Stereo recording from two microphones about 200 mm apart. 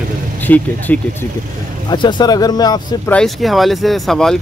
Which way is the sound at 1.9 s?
20° left (ahead or behind).